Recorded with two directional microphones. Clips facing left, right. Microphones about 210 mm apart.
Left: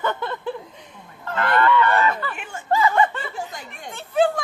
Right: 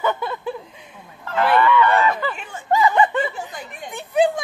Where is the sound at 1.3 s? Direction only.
10° right (ahead or behind).